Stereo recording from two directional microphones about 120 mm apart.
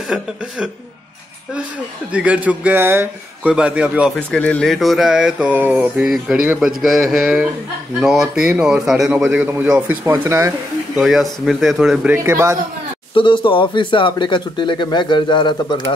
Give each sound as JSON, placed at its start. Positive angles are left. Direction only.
{"t": 2.1, "sound": "speech", "side_deg": -10}
{"t": 4.1, "sound": "speech", "side_deg": 10}
{"t": 10.0, "sound": "speech", "side_deg": -20}
{"t": 11.0, "sound": "speech", "side_deg": 0}
{"t": 12.3, "sound": "speech", "side_deg": -20}
{"t": 13.1, "sound": "speech", "side_deg": 45}